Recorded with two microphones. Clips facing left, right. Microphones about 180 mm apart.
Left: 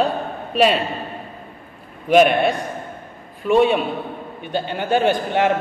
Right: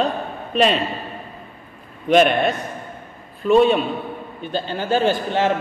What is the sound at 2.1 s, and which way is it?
A man's voice, 10° left (ahead or behind).